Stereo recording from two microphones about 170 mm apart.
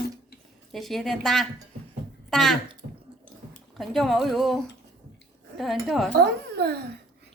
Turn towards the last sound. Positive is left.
turn(degrees=-70)  # may be behind; listen again after turning